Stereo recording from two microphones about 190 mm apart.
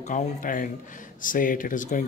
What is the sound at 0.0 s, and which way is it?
Speech, 45° left (ahead or behind).